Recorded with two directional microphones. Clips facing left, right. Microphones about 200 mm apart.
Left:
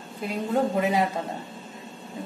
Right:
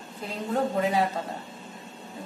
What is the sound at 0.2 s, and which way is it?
Speech, 10° left (ahead or behind).